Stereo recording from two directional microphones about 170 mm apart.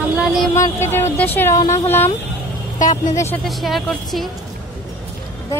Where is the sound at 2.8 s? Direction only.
45° left (ahead or behind).